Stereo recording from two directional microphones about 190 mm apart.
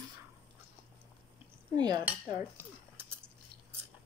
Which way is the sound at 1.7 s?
20° right (ahead or behind).